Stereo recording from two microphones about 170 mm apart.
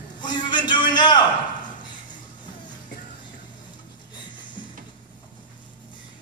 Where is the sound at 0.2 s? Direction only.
25° left (ahead or behind).